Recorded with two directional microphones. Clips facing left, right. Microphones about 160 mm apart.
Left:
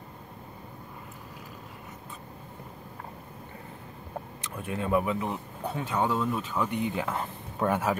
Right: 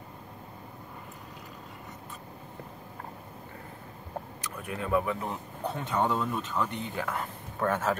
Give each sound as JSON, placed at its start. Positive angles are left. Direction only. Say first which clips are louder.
{"t": 4.4, "sound": "speech", "louder": "left 5 dB", "side_deg": 25}
{"t": 5.3, "sound": "speech", "louder": "left 1 dB", "side_deg": 5}